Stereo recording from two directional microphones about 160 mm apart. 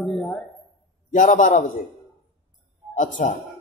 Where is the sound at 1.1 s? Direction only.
55° left (ahead or behind).